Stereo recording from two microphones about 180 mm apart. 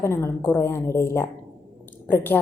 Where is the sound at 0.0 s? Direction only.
15° left (ahead or behind).